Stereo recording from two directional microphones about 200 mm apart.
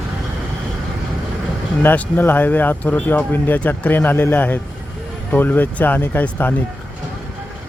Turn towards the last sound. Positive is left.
turn(degrees=10)  # may be behind; listen again after turning